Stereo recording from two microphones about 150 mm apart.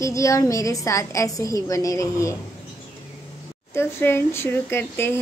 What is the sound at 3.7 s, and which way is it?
Speech, 15° left (ahead or behind).